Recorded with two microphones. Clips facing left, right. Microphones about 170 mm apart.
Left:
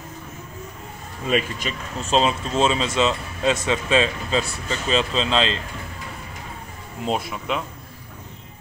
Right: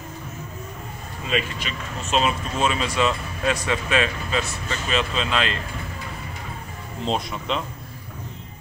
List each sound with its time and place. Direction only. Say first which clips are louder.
1.3 s speech: left 3 dB; 40° left (ahead or behind)
7.1 s speech: left 1 dB; 5° left (ahead or behind)